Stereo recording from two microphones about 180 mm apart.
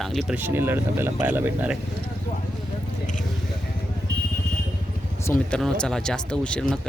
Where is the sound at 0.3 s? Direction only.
10° right (ahead or behind).